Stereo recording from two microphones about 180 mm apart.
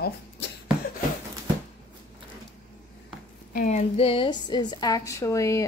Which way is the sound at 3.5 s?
45° left (ahead or behind).